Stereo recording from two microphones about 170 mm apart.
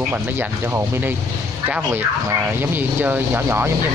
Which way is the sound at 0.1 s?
15° right (ahead or behind).